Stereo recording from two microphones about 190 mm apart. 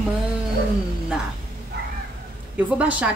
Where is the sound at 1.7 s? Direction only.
60° right (ahead or behind).